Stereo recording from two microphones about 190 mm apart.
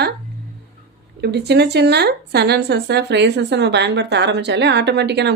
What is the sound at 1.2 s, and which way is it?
A woman's voice, 60° right (ahead or behind).